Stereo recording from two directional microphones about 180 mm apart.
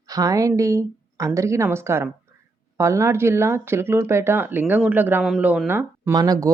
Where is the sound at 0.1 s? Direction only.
20° right (ahead or behind).